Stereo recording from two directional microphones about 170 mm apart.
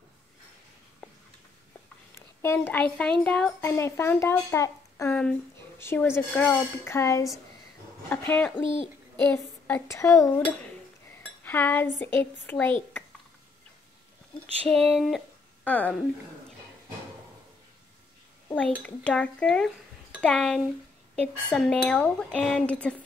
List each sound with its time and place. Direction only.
2.1 s a woman's voice: 15° left (ahead or behind)
8.3 s a woman's voice: 10° left (ahead or behind)
11.4 s a woman's voice: 10° left (ahead or behind)
14.6 s speech: 5° left (ahead or behind)
19.0 s a woman's voice: 5° left (ahead or behind)